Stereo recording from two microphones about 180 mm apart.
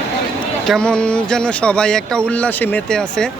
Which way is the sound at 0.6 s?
5° left (ahead or behind).